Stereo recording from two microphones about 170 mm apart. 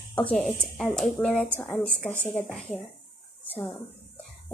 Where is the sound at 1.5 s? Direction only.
5° left (ahead or behind).